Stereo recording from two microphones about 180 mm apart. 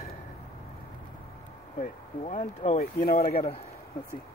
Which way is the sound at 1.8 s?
40° left (ahead or behind).